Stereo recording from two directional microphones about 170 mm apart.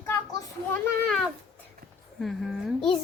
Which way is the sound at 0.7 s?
5° left (ahead or behind).